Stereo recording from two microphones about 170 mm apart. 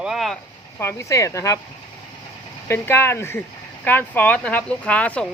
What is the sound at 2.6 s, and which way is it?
Speech, 15° left (ahead or behind).